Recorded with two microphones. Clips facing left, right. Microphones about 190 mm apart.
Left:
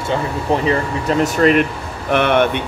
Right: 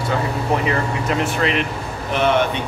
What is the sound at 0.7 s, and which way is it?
Speech, 40° left (ahead or behind).